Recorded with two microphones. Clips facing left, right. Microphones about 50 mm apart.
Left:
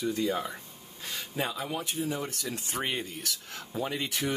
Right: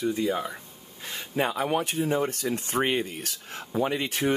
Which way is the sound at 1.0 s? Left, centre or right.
Centre.